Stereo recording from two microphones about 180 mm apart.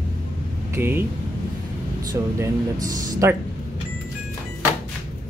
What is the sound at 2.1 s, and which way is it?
Speech, 20° right (ahead or behind).